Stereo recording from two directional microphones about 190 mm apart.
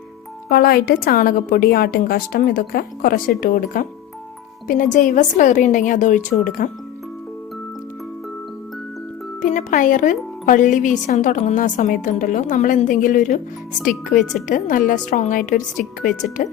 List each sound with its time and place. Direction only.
0.4 s a woman's voice: 55° left (ahead or behind)
9.4 s a woman's voice: 40° left (ahead or behind)